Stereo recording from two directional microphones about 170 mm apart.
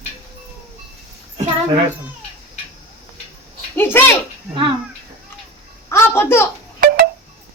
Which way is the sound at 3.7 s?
10° left (ahead or behind).